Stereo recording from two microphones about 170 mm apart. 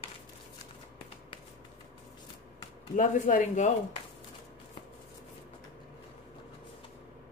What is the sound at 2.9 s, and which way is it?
Speech, 45° left (ahead or behind).